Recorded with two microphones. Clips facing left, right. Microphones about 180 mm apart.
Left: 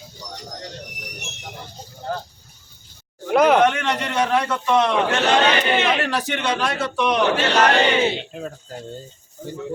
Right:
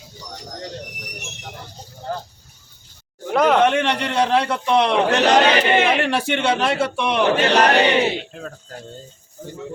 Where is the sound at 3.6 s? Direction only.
30° right (ahead or behind).